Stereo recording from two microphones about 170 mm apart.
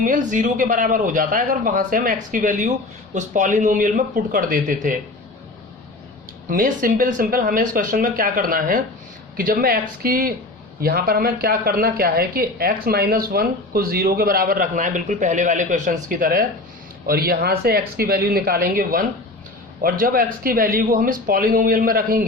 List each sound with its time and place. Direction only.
0.0 s a man's voice: 50° right (ahead or behind)
6.5 s a man's voice: 55° right (ahead or behind)